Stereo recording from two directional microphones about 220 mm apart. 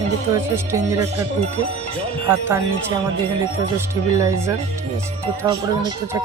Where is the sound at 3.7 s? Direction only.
15° right (ahead or behind).